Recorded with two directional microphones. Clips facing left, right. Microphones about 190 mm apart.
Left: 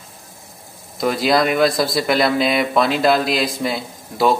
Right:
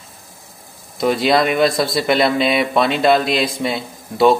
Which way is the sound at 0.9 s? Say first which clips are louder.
Right 2 dB; centre (ahead or behind).